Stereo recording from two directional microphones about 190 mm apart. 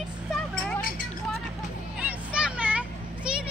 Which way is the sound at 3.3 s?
5° right (ahead or behind).